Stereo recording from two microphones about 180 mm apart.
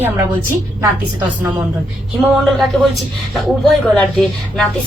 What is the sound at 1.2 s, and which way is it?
Speech, 20° right (ahead or behind).